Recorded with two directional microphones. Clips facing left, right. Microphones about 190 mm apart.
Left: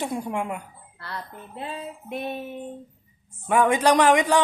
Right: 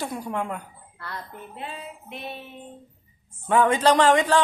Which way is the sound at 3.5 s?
15° left (ahead or behind).